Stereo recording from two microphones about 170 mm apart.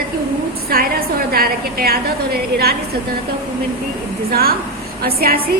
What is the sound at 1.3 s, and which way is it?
A woman's voice, 60° right (ahead or behind).